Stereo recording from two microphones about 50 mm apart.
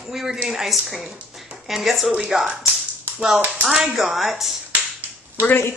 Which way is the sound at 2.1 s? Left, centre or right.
Centre.